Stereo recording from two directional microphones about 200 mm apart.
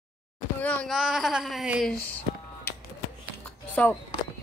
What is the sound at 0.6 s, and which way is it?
Speech, 5° left (ahead or behind).